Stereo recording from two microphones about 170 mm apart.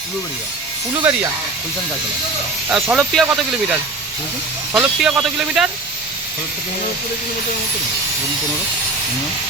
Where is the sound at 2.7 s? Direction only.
5° right (ahead or behind).